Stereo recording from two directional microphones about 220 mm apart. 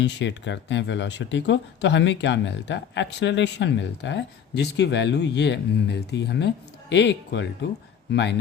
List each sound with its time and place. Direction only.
0.0 s speech: 55° left (ahead or behind)